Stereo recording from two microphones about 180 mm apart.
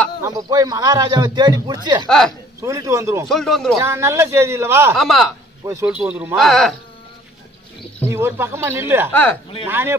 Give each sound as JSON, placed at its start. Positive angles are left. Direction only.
{"t": 0.2, "sound": "a man's voice", "side_deg": -20}
{"t": 2.0, "sound": "speech", "side_deg": 5}
{"t": 2.6, "sound": "a man's voice", "side_deg": -20}
{"t": 3.3, "sound": "speech", "side_deg": 0}
{"t": 3.7, "sound": "a man's voice", "side_deg": -15}
{"t": 4.9, "sound": "a man's voice", "side_deg": 0}
{"t": 8.1, "sound": "a man's voice", "side_deg": -15}